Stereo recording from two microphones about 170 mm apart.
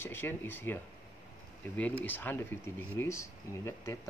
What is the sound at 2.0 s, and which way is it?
Speech, 10° left (ahead or behind).